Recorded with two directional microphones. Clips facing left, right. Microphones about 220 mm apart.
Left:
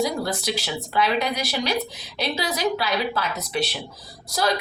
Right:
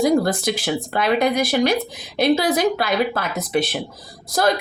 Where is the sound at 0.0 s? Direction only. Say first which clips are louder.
Right 7 dB; 50° right (ahead or behind).